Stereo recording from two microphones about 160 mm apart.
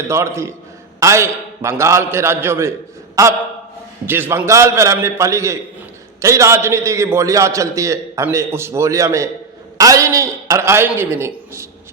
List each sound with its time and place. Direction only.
0.1 s a man's voice: 15° right (ahead or behind)